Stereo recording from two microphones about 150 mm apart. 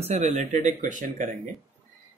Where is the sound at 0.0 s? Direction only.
45° right (ahead or behind).